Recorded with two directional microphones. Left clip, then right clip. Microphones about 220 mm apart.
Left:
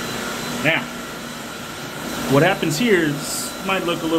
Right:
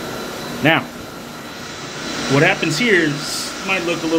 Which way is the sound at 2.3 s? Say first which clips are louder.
Right 2 dB; 5° right (ahead or behind).